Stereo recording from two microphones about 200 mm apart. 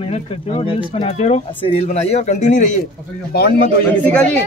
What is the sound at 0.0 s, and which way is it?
A man's voice, 30° left (ahead or behind).